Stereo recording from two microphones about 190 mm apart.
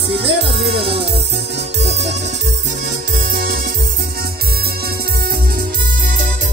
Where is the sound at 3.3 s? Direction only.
50° right (ahead or behind).